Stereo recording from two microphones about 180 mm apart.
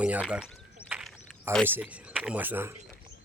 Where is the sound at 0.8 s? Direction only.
10° right (ahead or behind).